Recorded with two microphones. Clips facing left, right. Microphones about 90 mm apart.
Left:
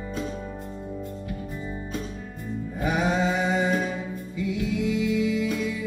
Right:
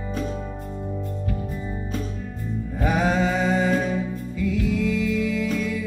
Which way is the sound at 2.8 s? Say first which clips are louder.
Right 2 dB; 20° left (ahead or behind).